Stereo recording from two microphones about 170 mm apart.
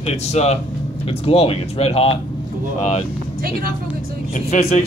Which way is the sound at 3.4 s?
60° right (ahead or behind).